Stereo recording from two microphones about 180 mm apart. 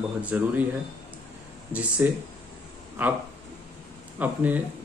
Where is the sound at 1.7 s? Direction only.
5° right (ahead or behind).